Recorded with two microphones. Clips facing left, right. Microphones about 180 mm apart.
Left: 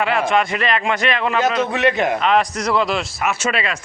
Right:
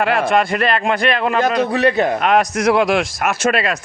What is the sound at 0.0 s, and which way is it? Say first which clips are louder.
A man's voice: right 2 dB; 40° right (ahead or behind).